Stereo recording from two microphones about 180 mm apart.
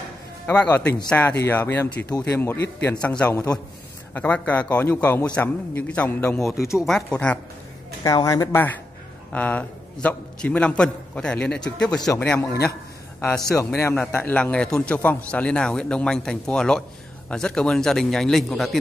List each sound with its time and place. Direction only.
0.5 s a man's voice: 10° left (ahead or behind)
8.0 s a man's voice: 20° left (ahead or behind)
13.9 s a man's voice: 5° left (ahead or behind)